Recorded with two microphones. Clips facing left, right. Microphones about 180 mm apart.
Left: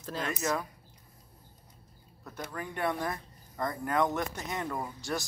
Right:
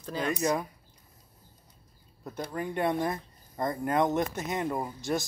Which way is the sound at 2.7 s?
20° right (ahead or behind).